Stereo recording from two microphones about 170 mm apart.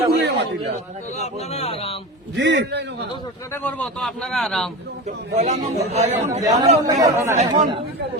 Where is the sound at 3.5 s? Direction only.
10° left (ahead or behind).